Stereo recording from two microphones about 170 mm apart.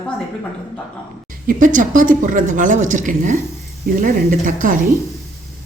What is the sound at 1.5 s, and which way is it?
A woman's voice, 50° right (ahead or behind).